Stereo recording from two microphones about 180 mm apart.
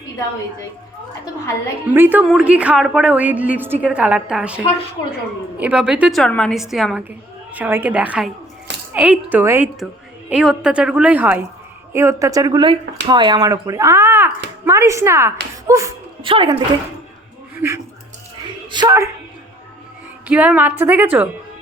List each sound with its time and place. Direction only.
1.9 s a woman's voice: 10° right (ahead or behind)
16.2 s speech: 30° right (ahead or behind)
18.7 s speech: 20° right (ahead or behind)
20.2 s a woman's voice: 5° right (ahead or behind)